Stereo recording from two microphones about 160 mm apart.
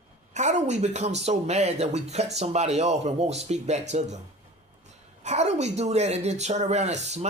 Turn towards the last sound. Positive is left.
turn(degrees=-45)  # may be behind; listen again after turning